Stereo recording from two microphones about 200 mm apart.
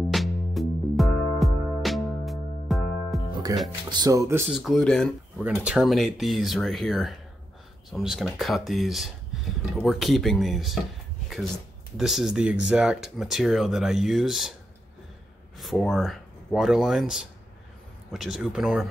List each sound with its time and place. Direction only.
0.1 s music: centre (ahead or behind)
3.5 s speech: 15° right (ahead or behind)
4.5 s speech: centre (ahead or behind)
12.0 s speech: centre (ahead or behind)
15.5 s speech: centre (ahead or behind)